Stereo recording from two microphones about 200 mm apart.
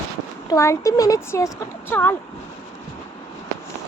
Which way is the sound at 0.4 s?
15° left (ahead or behind).